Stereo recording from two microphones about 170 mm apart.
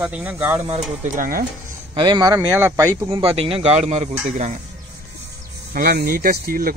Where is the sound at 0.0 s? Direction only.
10° right (ahead or behind).